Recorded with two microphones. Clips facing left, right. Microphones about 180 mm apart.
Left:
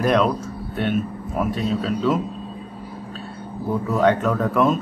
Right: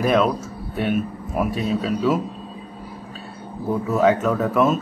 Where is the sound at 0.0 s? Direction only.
5° right (ahead or behind).